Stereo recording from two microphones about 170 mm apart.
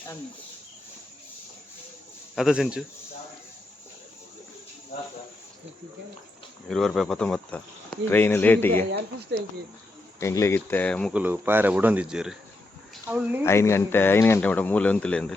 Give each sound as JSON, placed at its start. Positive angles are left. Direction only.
{"t": 2.3, "sound": "speech", "side_deg": 0}
{"t": 6.7, "sound": "speech", "side_deg": 0}
{"t": 10.2, "sound": "speech", "side_deg": 15}
{"t": 11.1, "sound": "speech", "side_deg": -10}
{"t": 13.4, "sound": "speech", "side_deg": 15}